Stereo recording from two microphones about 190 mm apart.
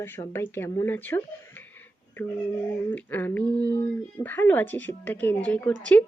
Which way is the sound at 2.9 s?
10° left (ahead or behind).